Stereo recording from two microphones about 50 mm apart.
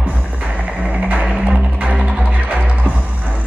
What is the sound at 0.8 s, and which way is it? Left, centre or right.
Music, right.